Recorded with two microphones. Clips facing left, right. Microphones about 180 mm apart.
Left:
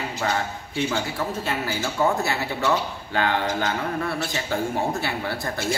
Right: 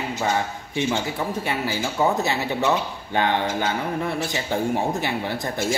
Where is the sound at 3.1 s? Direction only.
20° right (ahead or behind).